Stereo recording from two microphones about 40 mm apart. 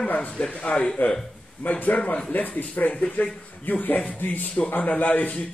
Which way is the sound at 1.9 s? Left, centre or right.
Left.